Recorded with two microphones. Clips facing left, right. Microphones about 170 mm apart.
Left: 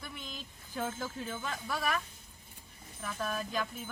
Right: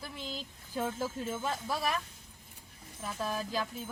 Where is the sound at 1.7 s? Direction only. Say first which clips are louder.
Even; 25° right (ahead or behind).